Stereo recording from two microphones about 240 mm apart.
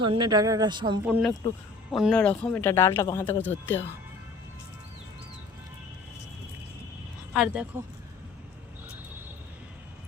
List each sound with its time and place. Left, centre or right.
0.0 s speech: centre
1.0 s speech: centre
7.3 s speech: centre